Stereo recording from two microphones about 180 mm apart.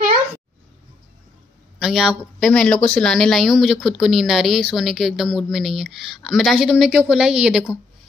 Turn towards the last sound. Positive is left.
turn(degrees=-5)  # may be behind; listen again after turning